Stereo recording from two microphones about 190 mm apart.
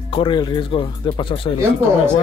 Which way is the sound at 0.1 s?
25° left (ahead or behind).